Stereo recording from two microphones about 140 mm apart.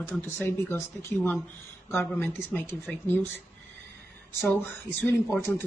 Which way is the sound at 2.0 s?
15° left (ahead or behind).